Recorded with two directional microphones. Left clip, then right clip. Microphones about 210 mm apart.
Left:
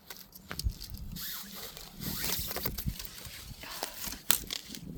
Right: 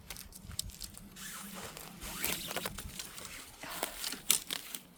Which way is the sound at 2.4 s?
55° left (ahead or behind).